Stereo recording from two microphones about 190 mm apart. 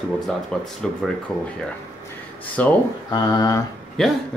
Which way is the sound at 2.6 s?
10° left (ahead or behind).